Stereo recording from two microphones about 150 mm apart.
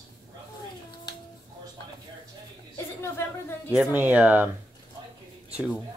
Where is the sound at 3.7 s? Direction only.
10° right (ahead or behind).